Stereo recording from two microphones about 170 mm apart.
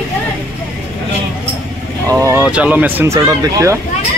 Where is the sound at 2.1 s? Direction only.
15° right (ahead or behind).